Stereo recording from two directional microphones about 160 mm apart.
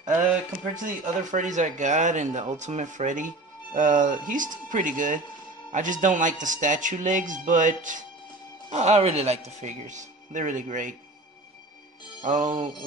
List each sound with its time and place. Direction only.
0.8 s speech: 50° right (ahead or behind)
12.2 s speech: 50° right (ahead or behind)